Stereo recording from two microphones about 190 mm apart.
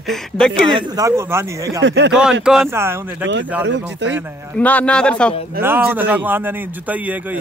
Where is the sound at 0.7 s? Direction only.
20° right (ahead or behind).